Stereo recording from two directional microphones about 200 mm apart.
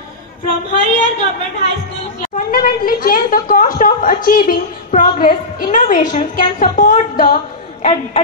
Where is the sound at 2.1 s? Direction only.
45° left (ahead or behind).